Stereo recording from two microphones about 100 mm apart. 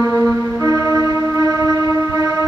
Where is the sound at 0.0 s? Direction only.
30° right (ahead or behind).